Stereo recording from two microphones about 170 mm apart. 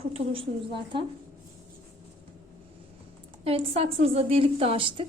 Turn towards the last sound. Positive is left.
turn(degrees=-30)  # may be behind; listen again after turning